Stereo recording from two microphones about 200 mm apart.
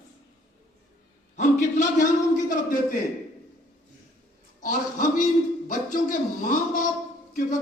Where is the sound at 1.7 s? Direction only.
40° left (ahead or behind).